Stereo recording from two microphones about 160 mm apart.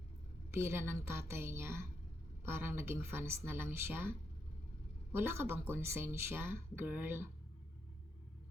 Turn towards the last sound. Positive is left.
turn(degrees=-15)  # may be behind; listen again after turning